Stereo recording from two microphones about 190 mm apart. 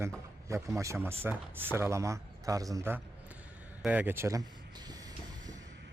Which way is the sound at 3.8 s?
10° right (ahead or behind).